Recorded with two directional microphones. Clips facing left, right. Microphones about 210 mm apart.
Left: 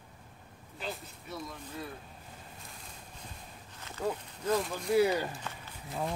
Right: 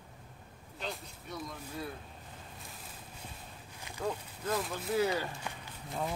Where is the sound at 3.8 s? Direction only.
15° right (ahead or behind).